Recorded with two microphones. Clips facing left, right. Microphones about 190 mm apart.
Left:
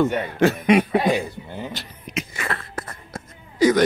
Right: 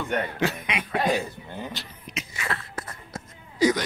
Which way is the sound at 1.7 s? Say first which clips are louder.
Left 3 dB; 55° left (ahead or behind).